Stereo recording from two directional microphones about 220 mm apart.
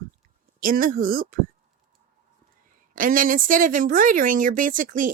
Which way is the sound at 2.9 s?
40° right (ahead or behind).